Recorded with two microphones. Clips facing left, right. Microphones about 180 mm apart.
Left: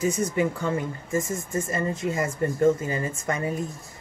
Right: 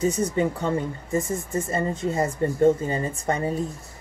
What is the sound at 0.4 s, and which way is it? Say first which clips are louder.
A woman's voice: right 2 dB; 30° right (ahead or behind).